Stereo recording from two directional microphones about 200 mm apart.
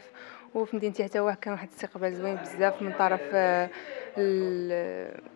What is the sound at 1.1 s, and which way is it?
Speech, 20° left (ahead or behind).